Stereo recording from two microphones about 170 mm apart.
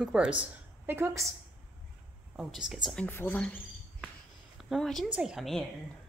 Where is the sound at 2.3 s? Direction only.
5° right (ahead or behind).